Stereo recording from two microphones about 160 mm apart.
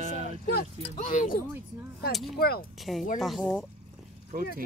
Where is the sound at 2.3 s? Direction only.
75° left (ahead or behind).